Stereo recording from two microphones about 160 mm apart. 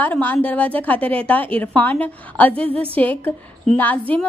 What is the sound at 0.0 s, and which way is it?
A woman's voice, 10° left (ahead or behind).